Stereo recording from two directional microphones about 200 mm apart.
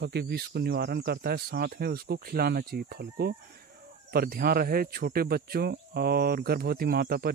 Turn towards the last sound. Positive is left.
turn(degrees=-50)  # may be behind; listen again after turning